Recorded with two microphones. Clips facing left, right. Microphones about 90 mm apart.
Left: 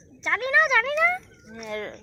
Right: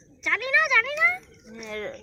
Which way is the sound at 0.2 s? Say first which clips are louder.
Left 2 dB; 35° left (ahead or behind).